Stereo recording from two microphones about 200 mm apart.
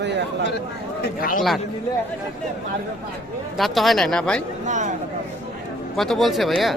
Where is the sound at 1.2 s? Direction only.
45° left (ahead or behind).